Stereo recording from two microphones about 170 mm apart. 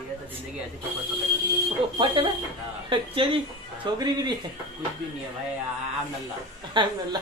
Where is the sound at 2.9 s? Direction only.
30° right (ahead or behind).